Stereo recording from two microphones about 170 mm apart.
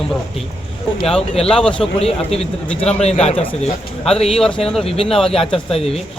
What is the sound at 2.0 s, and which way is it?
A man's voice, 35° left (ahead or behind).